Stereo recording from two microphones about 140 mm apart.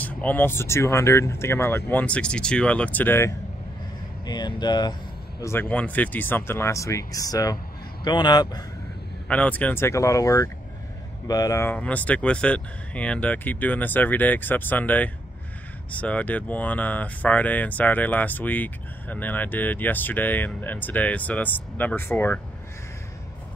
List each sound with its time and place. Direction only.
0.0 s speech: 10° left (ahead or behind)
4.3 s speech: 30° left (ahead or behind)
5.4 s speech: 15° left (ahead or behind)
9.3 s speech: 10° left (ahead or behind)